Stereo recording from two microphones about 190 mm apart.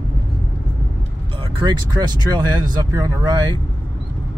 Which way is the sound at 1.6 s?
25° right (ahead or behind).